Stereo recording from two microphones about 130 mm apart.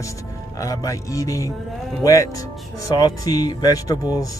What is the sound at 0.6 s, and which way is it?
Speech, 25° left (ahead or behind).